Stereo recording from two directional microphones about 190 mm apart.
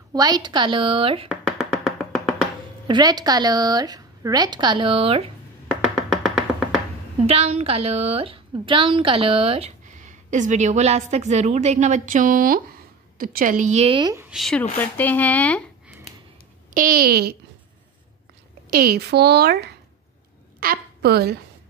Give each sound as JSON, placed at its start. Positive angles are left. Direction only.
{"t": 0.1, "sound": "a woman's voice", "side_deg": -20}
{"t": 1.3, "sound": "music", "side_deg": 0}
{"t": 2.9, "sound": "a woman's voice", "side_deg": -20}
{"t": 5.7, "sound": "music", "side_deg": -5}
{"t": 7.2, "sound": "a woman's voice", "side_deg": -35}
{"t": 14.1, "sound": "speech", "side_deg": -5}
{"t": 16.7, "sound": "a woman's voice", "side_deg": -50}
{"t": 18.7, "sound": "a woman's voice", "side_deg": -55}
{"t": 20.6, "sound": "a woman's voice", "side_deg": -55}